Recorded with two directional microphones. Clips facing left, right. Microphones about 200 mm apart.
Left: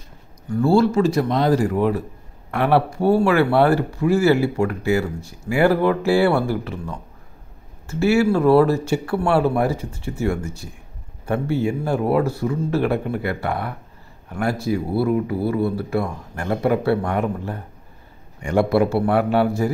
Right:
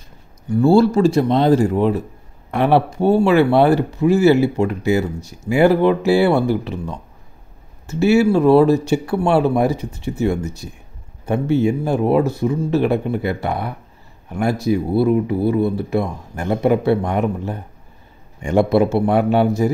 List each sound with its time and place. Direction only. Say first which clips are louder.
0.6 s speech: right 3 dB; 30° right (ahead or behind)